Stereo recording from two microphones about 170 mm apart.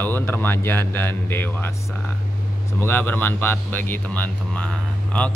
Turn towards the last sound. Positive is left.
turn(degrees=5)  # may be behind; listen again after turning